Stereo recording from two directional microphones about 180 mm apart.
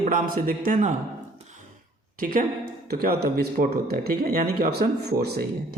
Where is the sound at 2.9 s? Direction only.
60° right (ahead or behind).